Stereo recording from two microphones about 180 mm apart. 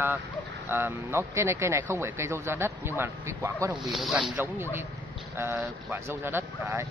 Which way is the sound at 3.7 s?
Centre (ahead or behind).